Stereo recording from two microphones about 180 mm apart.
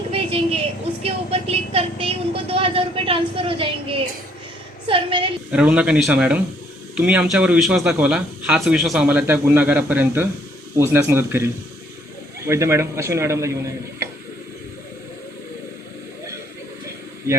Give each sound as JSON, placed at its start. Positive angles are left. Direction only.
{"t": 0.1, "sound": "a sound", "side_deg": -30}
{"t": 1.0, "sound": "music", "side_deg": -35}
{"t": 4.9, "sound": "a woman's voice", "side_deg": -30}
{"t": 5.5, "sound": "a man's voice", "side_deg": -5}
{"t": 12.5, "sound": "a man's voice", "side_deg": -15}